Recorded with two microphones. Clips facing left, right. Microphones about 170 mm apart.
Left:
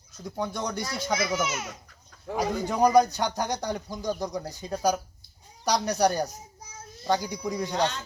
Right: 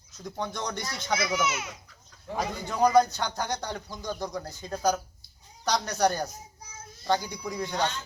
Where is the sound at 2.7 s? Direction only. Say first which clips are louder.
Left 1 dB; 15° left (ahead or behind).